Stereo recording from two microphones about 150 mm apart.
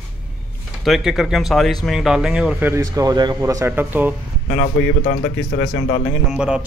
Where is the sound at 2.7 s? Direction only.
20° right (ahead or behind).